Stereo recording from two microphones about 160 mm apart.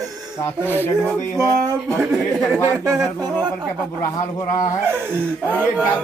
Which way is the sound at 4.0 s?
20° left (ahead or behind).